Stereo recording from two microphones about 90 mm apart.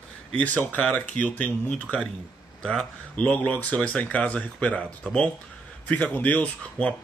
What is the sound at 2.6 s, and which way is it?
Speech, 10° left (ahead or behind).